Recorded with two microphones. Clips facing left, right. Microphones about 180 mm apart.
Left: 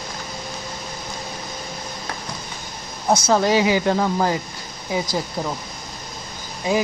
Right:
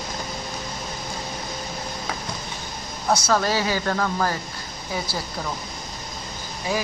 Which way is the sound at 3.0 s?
20° left (ahead or behind).